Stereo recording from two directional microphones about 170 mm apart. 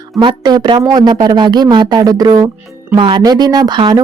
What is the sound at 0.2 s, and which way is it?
Speech, 25° right (ahead or behind).